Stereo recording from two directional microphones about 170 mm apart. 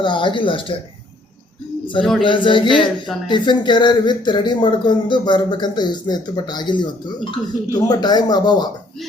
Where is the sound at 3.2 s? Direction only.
25° left (ahead or behind).